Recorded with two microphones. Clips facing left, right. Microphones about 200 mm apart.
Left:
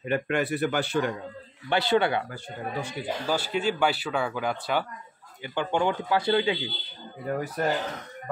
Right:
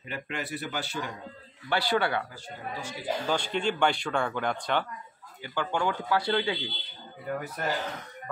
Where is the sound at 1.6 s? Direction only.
20° left (ahead or behind).